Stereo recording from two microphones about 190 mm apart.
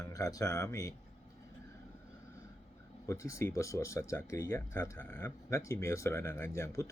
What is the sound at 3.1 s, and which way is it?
Speech, 15° left (ahead or behind).